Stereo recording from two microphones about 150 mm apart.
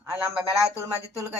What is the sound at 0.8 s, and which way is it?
Speech, 20° right (ahead or behind).